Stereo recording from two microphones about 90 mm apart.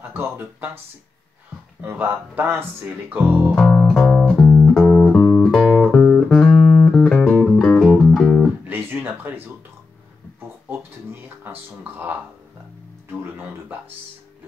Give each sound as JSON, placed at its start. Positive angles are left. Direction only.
{"t": 0.1, "sound": "speech", "side_deg": -25}
{"t": 1.8, "sound": "speech", "side_deg": -20}
{"t": 3.8, "sound": "music", "side_deg": -5}
{"t": 4.4, "sound": "music", "side_deg": 15}
{"t": 5.6, "sound": "music", "side_deg": -5}
{"t": 8.6, "sound": "music", "side_deg": -25}
{"t": 11.4, "sound": "speech", "side_deg": -20}